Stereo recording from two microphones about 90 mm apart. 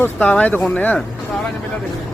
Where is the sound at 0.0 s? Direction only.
15° left (ahead or behind).